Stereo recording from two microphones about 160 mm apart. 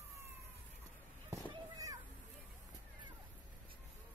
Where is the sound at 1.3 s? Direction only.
20° right (ahead or behind).